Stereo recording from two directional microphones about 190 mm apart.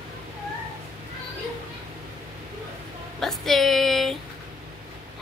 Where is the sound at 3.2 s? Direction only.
Centre (ahead or behind).